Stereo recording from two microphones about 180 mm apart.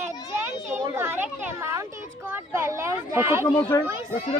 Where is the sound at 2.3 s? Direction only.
15° right (ahead or behind).